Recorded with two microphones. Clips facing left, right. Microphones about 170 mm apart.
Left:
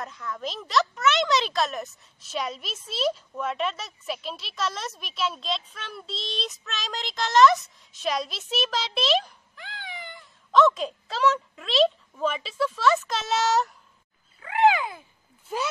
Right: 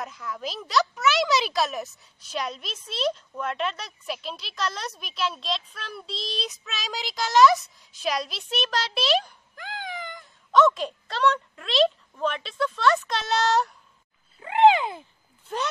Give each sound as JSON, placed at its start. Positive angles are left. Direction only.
{"t": 0.0, "sound": "speech", "side_deg": -5}
{"t": 9.6, "sound": "cat", "side_deg": -45}
{"t": 10.5, "sound": "speech", "side_deg": 0}
{"t": 14.4, "sound": "a sound", "side_deg": -25}
{"t": 15.4, "sound": "speech", "side_deg": 5}